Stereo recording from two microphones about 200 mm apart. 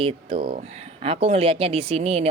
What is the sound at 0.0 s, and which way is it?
Speech, 25° right (ahead or behind).